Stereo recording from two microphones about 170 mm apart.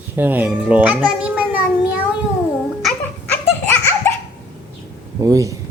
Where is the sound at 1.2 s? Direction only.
5° right (ahead or behind).